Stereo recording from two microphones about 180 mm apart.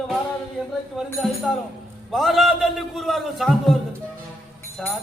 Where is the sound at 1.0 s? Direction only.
Centre (ahead or behind).